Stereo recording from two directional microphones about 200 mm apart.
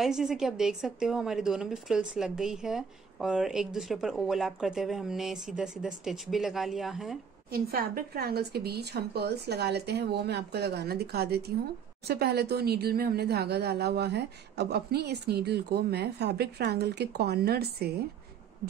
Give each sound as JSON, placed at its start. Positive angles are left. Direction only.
{"t": 0.0, "sound": "a woman's voice", "side_deg": 0}
{"t": 7.5, "sound": "speech", "side_deg": -50}